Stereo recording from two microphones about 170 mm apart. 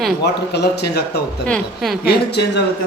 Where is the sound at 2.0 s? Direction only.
75° left (ahead or behind).